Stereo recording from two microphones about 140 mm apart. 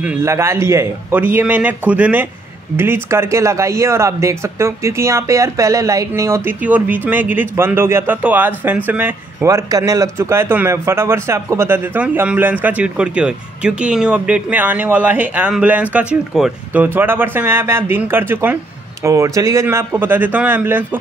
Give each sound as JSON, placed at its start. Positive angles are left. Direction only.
{"t": 0.0, "sound": "speech", "side_deg": -15}